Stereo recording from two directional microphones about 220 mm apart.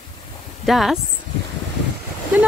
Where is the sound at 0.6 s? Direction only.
Centre (ahead or behind).